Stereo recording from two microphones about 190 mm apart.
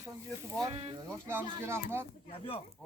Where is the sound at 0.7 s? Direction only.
30° right (ahead or behind).